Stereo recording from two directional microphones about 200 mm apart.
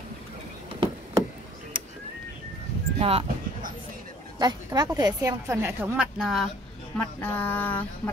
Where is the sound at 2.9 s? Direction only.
30° right (ahead or behind).